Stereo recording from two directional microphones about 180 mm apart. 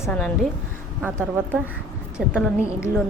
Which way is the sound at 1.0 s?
10° right (ahead or behind).